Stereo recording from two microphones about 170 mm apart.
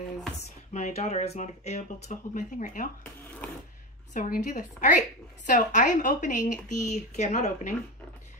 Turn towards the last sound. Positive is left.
turn(degrees=45)  # may be behind; listen again after turning